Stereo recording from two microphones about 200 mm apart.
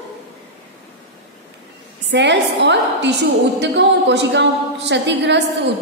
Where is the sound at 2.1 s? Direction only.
60° right (ahead or behind).